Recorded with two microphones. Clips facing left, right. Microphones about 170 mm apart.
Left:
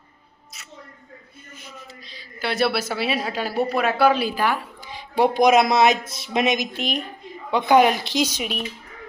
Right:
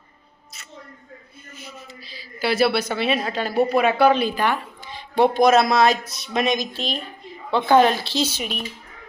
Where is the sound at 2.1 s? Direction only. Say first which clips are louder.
Right 4 dB; 5° right (ahead or behind).